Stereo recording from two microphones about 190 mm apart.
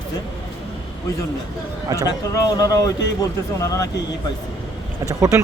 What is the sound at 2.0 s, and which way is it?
Speech, 20° left (ahead or behind).